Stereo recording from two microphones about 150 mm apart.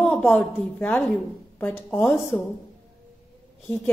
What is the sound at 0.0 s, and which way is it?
A woman's voice, 5° left (ahead or behind).